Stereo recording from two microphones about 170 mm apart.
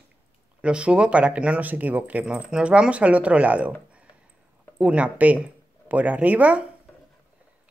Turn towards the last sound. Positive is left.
turn(degrees=-10)  # may be behind; listen again after turning